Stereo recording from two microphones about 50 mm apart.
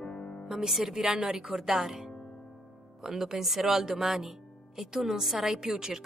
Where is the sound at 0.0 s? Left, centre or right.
Centre.